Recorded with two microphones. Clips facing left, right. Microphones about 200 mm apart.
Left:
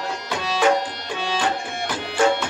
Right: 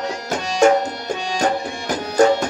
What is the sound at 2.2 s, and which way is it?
Music, 40° right (ahead or behind).